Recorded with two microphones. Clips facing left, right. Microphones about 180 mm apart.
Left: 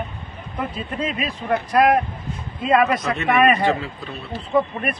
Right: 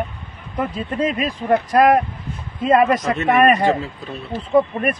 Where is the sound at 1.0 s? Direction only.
45° right (ahead or behind).